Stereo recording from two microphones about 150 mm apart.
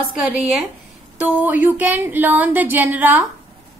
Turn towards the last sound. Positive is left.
turn(degrees=-10)  # may be behind; listen again after turning